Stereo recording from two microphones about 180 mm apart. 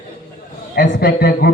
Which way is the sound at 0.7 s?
60° left (ahead or behind).